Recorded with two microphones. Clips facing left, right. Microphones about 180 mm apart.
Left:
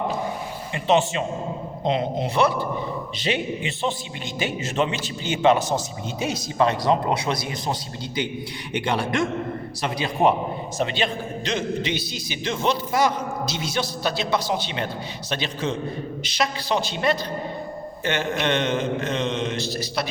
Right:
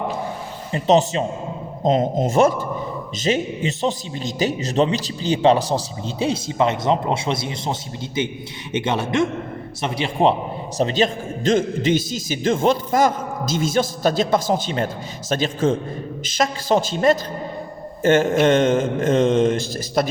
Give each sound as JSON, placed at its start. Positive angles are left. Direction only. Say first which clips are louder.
{"t": 0.7, "sound": "a man's voice", "louder": "right 4 dB", "side_deg": -40}
{"t": 10.8, "sound": "a man's voice", "louder": "right 6 dB", "side_deg": -40}